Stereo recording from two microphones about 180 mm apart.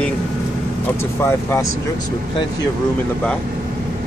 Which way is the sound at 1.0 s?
15° left (ahead or behind).